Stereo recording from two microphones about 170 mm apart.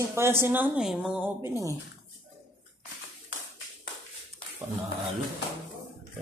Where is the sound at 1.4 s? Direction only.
20° right (ahead or behind).